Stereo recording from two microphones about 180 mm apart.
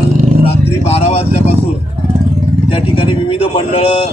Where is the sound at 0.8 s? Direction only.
35° left (ahead or behind).